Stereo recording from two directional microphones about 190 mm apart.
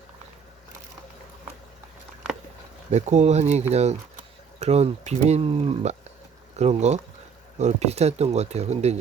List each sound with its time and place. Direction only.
2.9 s speech: 35° right (ahead or behind)